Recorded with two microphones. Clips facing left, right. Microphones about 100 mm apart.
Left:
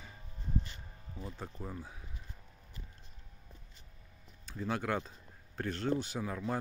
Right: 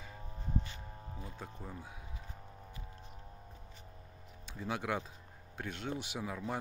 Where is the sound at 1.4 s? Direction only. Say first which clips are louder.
Left 4 dB; centre (ahead or behind).